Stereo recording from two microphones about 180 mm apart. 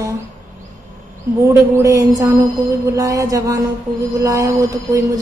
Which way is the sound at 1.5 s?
15° right (ahead or behind).